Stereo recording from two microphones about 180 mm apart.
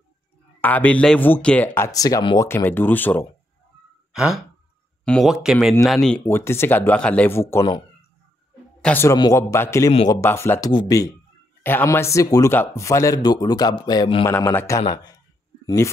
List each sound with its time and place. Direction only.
0.6 s speech: 10° left (ahead or behind)
4.1 s sigh: 5° right (ahead or behind)
5.0 s speech: centre (ahead or behind)
8.8 s speech: 15° left (ahead or behind)
14.3 s speech: 10° left (ahead or behind)